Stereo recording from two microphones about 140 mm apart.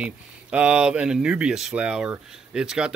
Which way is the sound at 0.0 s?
10° right (ahead or behind).